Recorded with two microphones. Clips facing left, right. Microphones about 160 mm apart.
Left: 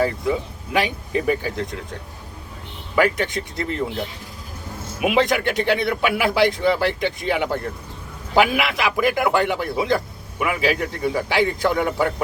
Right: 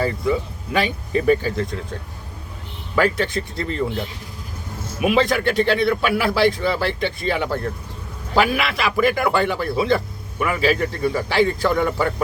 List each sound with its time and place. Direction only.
0.0 s a man's voice: 15° left (ahead or behind)
2.9 s a man's voice: 15° left (ahead or behind)
4.9 s a man's voice: 15° left (ahead or behind)